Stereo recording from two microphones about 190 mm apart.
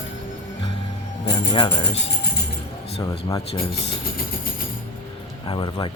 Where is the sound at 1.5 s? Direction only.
30° left (ahead or behind).